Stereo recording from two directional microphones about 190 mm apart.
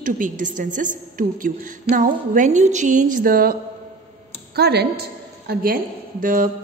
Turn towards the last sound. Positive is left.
turn(degrees=-45)  # may be behind; listen again after turning